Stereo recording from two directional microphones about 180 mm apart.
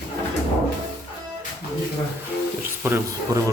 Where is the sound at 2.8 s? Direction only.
15° right (ahead or behind).